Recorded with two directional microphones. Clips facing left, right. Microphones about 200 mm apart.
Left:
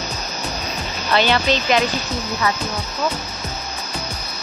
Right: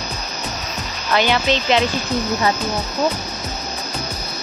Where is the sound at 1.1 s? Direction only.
15° right (ahead or behind).